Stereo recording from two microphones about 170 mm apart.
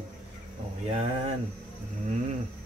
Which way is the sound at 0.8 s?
40° right (ahead or behind).